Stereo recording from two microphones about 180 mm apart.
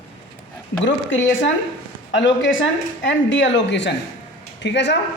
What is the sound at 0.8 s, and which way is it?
A woman's voice, 90° left.